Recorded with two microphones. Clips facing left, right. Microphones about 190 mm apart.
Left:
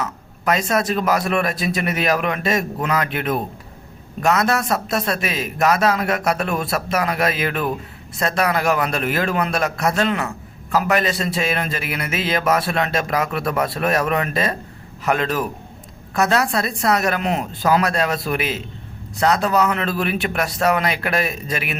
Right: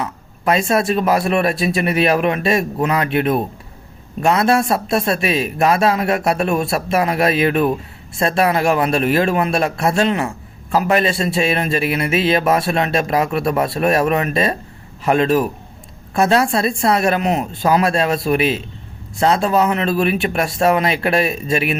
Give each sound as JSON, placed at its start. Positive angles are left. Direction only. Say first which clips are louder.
{"t": 0.0, "sound": "a man's voice", "louder": "right 2 dB", "side_deg": -25}